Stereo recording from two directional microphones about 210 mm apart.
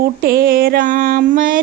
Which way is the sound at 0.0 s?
45° right (ahead or behind).